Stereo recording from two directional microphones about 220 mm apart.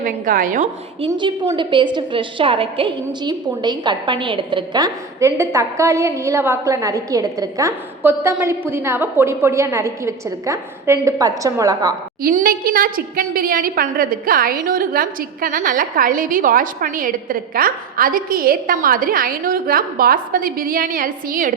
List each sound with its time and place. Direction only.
0.0 s a woman's voice: 40° right (ahead or behind)
1.1 s a woman's voice: 20° right (ahead or behind)
12.2 s a woman's voice: 40° right (ahead or behind)